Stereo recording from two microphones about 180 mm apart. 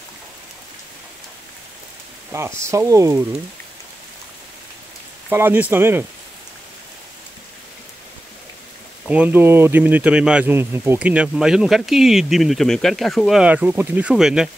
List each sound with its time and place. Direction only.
2.3 s speech: 15° right (ahead or behind)
5.3 s speech: 10° right (ahead or behind)
9.0 s speech: 5° right (ahead or behind)